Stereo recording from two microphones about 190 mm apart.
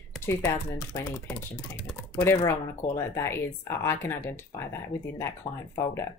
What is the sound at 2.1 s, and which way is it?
Speech, 10° left (ahead or behind).